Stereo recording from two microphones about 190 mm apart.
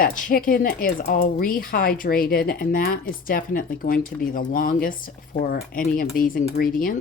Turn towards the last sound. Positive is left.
turn(degrees=50)  # may be behind; listen again after turning